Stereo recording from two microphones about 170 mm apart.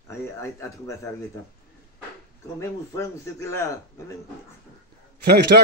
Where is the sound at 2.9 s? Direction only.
20° left (ahead or behind).